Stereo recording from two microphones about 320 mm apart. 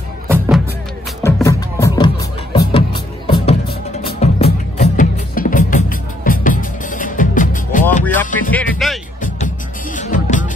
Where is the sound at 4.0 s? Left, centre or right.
Centre.